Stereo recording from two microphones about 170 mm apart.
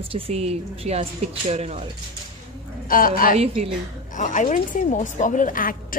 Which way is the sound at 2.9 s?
55° left (ahead or behind).